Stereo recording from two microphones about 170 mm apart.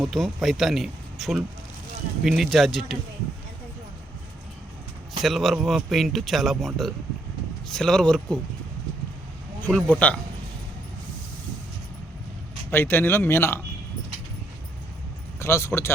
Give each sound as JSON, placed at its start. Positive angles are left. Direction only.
{"t": 0.0, "sound": "speech", "side_deg": 0}
{"t": 5.2, "sound": "speech", "side_deg": 0}
{"t": 9.6, "sound": "speech", "side_deg": 10}
{"t": 12.7, "sound": "speech", "side_deg": 10}
{"t": 15.4, "sound": "speech", "side_deg": 15}